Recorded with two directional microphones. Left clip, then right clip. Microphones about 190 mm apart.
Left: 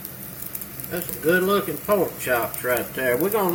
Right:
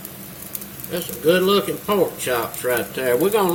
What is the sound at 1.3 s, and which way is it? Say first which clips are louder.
Speech: right 3 dB; 5° right (ahead or behind).